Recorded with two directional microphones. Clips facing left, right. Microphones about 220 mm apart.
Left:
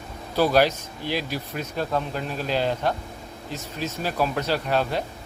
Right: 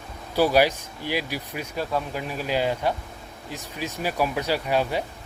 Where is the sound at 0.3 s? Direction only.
10° right (ahead or behind).